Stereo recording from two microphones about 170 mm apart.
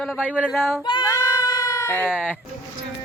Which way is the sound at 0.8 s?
25° left (ahead or behind).